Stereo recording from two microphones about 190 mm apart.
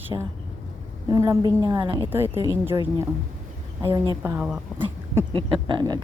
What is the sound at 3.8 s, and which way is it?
Speech, 15° right (ahead or behind).